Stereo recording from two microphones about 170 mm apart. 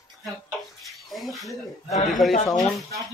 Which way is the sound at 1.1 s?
Centre (ahead or behind).